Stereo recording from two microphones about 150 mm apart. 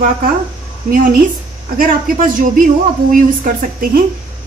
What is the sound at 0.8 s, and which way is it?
A man's voice, 65° right (ahead or behind).